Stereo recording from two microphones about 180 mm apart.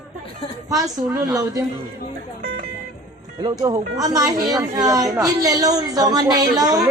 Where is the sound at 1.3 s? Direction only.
20° right (ahead or behind).